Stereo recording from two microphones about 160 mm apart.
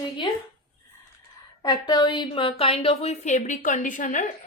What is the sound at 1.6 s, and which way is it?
Speech, 25° left (ahead or behind).